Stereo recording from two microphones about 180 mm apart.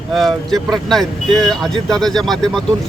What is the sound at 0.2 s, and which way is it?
Speech, centre (ahead or behind).